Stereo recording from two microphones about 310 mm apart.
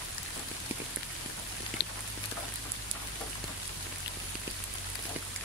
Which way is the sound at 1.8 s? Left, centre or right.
Left.